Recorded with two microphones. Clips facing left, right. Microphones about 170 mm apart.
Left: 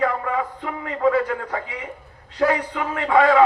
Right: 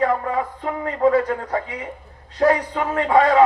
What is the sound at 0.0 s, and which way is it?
A man's voice, 35° right (ahead or behind).